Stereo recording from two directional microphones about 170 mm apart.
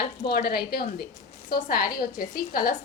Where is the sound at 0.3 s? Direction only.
65° left (ahead or behind).